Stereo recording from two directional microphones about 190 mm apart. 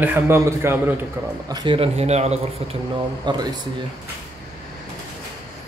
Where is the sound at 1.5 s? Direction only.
25° right (ahead or behind).